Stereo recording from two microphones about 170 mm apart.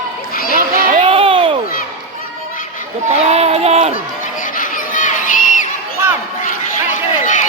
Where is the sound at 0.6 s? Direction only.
55° right (ahead or behind).